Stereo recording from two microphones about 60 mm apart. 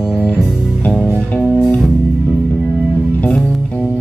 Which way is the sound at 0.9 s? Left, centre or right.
Right.